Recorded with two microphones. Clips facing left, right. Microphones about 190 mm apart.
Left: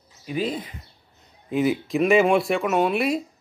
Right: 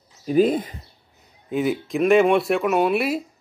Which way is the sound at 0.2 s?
45° right (ahead or behind).